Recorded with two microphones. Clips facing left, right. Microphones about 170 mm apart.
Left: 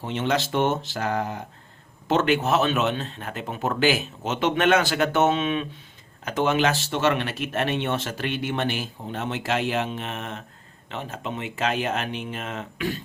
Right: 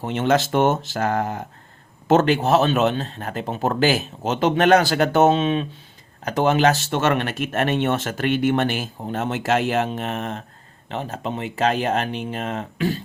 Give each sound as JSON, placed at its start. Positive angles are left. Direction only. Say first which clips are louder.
{"t": 0.0, "sound": "speech", "louder": "right 5 dB", "side_deg": -50}